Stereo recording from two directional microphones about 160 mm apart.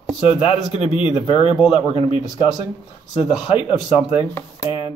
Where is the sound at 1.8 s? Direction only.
30° left (ahead or behind).